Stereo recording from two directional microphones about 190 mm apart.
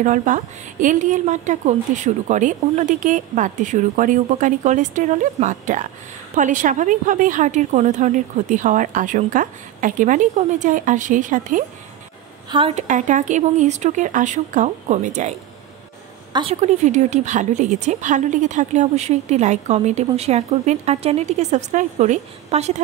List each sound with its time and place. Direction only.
0.0 s a woman's voice: 40° right (ahead or behind)
12.4 s a woman's voice: 25° right (ahead or behind)
12.8 s a woman's voice: 40° right (ahead or behind)
16.3 s a woman's voice: 35° right (ahead or behind)